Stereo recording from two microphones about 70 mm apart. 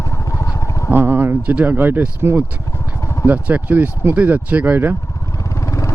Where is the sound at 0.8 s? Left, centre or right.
Right.